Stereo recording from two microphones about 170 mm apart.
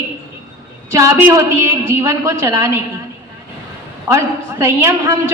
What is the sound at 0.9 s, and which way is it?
A woman's voice, 15° right (ahead or behind).